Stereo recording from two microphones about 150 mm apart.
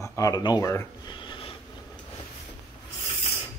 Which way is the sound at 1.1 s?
35° left (ahead or behind).